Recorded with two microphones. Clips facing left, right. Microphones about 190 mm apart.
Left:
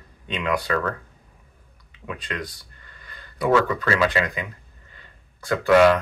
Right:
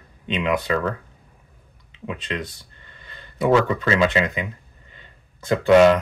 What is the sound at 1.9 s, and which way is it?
Speech, 20° right (ahead or behind).